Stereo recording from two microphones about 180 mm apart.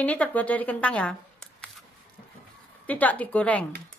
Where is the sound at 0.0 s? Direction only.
10° left (ahead or behind).